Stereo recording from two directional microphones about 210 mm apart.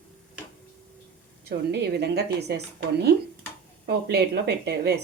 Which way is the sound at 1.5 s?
50° right (ahead or behind).